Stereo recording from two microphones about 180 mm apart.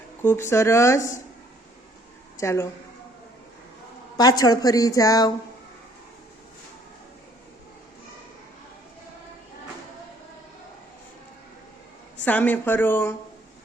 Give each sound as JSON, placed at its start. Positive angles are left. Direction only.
{"t": 0.2, "sound": "speech", "side_deg": 15}
{"t": 2.4, "sound": "speech", "side_deg": 15}
{"t": 4.2, "sound": "a woman's voice", "side_deg": 20}
{"t": 12.2, "sound": "speech", "side_deg": 10}